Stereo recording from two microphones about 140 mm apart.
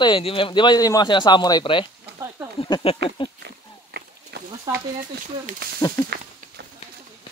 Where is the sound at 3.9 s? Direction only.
90° right.